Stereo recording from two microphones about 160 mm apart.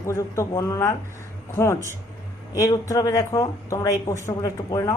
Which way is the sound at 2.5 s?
20° left (ahead or behind).